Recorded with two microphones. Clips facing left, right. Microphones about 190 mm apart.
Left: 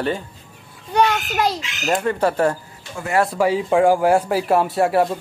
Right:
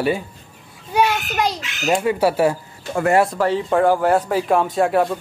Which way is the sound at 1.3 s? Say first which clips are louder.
Left 1 dB; centre (ahead or behind).